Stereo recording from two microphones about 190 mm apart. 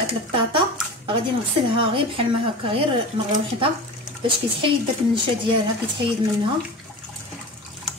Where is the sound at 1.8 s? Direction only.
30° right (ahead or behind).